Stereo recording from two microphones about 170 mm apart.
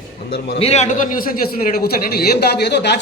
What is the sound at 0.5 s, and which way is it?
A man's voice, 40° left (ahead or behind).